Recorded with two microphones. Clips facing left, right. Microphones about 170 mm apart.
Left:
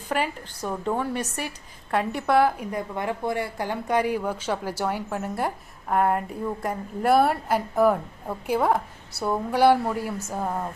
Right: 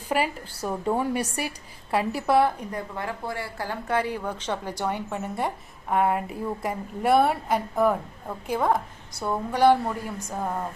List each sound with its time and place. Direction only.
0.1 s a woman's voice: 10° right (ahead or behind)
2.6 s a woman's voice: 15° left (ahead or behind)